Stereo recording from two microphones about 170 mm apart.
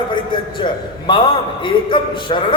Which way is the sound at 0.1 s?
30° left (ahead or behind).